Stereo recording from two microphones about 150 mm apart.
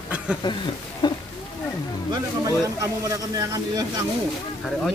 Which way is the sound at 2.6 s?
25° right (ahead or behind).